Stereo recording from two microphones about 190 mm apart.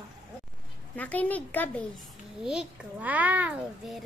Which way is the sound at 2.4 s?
5° right (ahead or behind).